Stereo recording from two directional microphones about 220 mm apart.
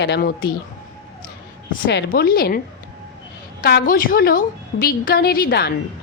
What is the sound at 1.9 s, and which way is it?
Speech, 50° left (ahead or behind).